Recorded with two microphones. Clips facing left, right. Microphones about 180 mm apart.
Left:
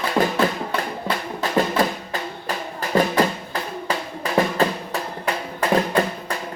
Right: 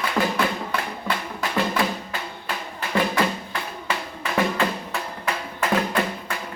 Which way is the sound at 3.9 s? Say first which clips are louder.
Left 4 dB; 35° left (ahead or behind).